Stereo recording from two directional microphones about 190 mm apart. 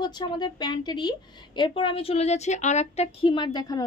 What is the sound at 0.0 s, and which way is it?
A woman's voice, 20° left (ahead or behind).